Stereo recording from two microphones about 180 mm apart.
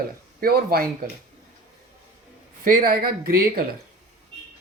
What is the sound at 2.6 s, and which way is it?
Speech, 50° right (ahead or behind).